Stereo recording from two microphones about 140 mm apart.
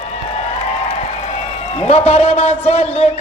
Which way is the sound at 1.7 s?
45° left (ahead or behind).